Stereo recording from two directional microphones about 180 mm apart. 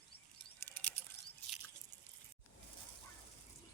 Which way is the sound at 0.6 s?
10° left (ahead or behind).